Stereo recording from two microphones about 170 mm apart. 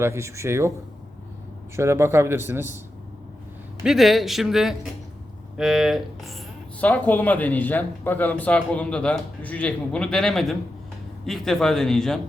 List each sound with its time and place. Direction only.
0.0 s speech: 15° right (ahead or behind)
1.7 s speech: 15° right (ahead or behind)
3.8 s speech: centre (ahead or behind)